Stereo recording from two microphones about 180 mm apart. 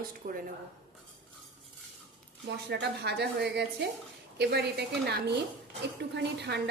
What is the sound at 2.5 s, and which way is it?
A woman's voice, 70° right (ahead or behind).